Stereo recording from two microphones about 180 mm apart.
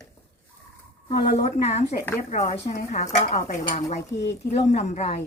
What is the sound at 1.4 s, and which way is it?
Speech, 40° left (ahead or behind).